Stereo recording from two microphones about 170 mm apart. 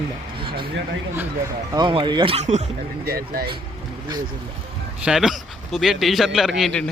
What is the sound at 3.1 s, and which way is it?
Speech, 60° right (ahead or behind).